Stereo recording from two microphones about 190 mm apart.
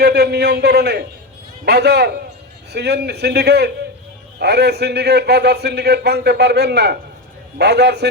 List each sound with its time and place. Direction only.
0.0 s a man's voice: 60° right (ahead or behind)